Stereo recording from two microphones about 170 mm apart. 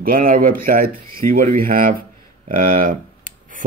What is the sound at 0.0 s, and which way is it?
Speech, 55° right (ahead or behind).